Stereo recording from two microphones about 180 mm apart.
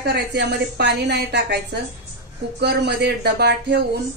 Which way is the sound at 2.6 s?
65° right (ahead or behind).